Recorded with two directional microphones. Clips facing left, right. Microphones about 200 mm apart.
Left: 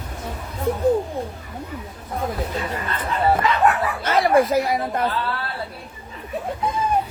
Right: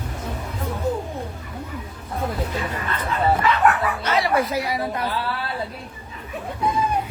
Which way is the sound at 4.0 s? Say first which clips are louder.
Left 6 dB; 50° left (ahead or behind).